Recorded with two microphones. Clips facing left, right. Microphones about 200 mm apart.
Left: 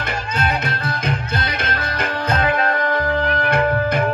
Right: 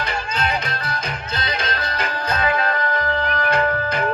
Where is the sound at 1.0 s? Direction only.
55° left (ahead or behind).